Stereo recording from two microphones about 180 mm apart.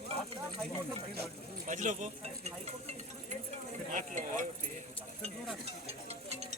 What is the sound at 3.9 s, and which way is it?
Stir, 45° right (ahead or behind).